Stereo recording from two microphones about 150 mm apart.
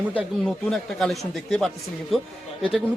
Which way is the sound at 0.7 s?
5° left (ahead or behind).